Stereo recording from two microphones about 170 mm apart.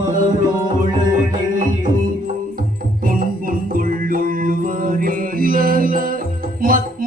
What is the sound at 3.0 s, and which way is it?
Music, 55° right (ahead or behind).